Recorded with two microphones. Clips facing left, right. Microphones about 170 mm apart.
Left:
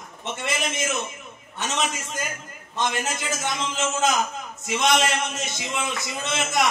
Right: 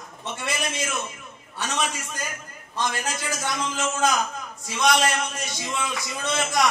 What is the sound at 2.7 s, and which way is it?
A man's voice, 20° left (ahead or behind).